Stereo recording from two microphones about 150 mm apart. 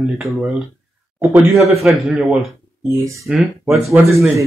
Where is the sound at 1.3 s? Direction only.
15° right (ahead or behind).